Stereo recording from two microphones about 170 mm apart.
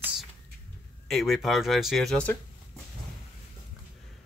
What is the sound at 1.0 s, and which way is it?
Speech, centre (ahead or behind).